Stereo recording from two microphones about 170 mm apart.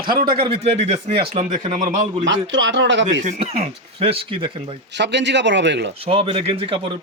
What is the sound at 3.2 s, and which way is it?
Speech, 40° right (ahead or behind).